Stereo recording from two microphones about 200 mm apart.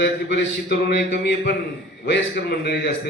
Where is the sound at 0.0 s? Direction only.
55° left (ahead or behind).